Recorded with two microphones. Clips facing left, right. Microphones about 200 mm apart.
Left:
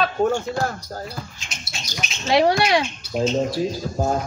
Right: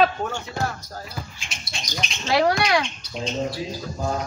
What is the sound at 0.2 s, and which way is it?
Speech, 40° left (ahead or behind).